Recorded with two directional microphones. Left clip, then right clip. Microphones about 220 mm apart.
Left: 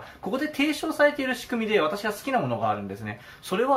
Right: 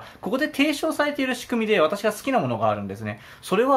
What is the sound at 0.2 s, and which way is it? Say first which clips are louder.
Speech: right 4 dB; 40° right (ahead or behind).